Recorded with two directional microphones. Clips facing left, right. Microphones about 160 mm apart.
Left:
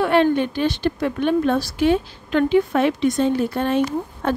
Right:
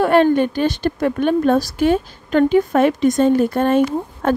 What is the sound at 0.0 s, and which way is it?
A woman's voice, 45° right (ahead or behind).